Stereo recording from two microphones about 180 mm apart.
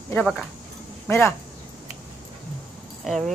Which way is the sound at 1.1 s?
15° left (ahead or behind).